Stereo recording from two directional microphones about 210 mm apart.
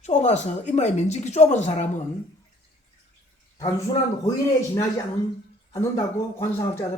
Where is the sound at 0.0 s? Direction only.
35° left (ahead or behind).